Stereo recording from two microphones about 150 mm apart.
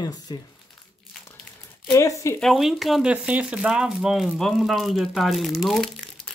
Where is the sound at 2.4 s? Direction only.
Centre (ahead or behind).